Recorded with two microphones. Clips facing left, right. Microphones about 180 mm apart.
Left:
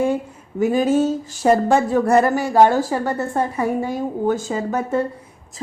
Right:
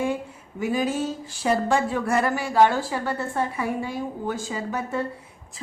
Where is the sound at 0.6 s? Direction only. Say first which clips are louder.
Left 8 dB; 45° left (ahead or behind).